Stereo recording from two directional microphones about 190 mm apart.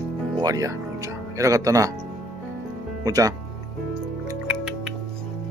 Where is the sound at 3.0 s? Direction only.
20° right (ahead or behind).